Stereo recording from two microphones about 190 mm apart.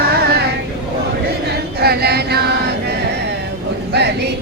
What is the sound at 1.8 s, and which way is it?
Choir, 55° right (ahead or behind).